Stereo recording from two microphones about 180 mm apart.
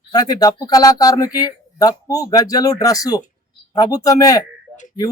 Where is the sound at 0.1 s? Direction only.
20° left (ahead or behind).